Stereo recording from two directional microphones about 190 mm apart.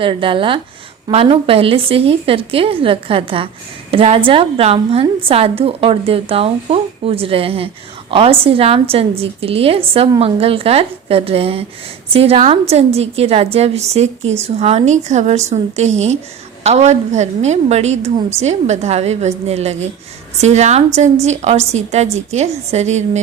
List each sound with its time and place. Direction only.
0.0 s a woman's voice: 25° right (ahead or behind)